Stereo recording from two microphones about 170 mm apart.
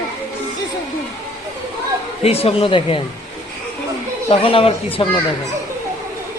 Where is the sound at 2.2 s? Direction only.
35° left (ahead or behind).